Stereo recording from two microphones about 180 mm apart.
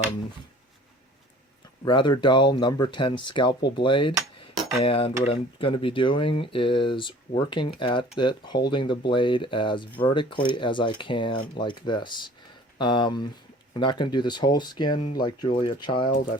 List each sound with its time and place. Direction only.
1.8 s speech: 25° left (ahead or behind)
4.8 s dishes: 30° left (ahead or behind)
5.2 s speech: 30° left (ahead or behind)